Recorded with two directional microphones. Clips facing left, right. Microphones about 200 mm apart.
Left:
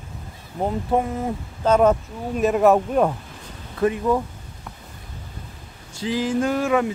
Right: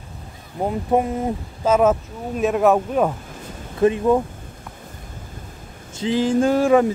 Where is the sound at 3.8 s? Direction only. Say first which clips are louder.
Right 4 dB; 25° right (ahead or behind).